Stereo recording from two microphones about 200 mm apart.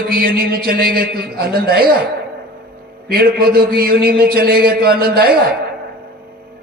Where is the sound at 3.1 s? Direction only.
50° right (ahead or behind).